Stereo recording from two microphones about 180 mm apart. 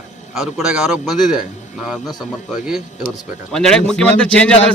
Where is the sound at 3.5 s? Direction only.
5° left (ahead or behind).